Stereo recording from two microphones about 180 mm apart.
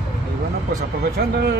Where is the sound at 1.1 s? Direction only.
65° right (ahead or behind).